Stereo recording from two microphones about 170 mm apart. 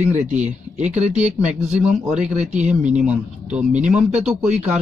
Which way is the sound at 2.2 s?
45° right (ahead or behind).